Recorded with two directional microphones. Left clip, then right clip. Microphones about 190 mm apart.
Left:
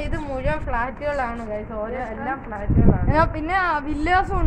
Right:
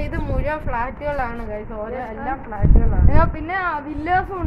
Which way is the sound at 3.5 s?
60° left (ahead or behind).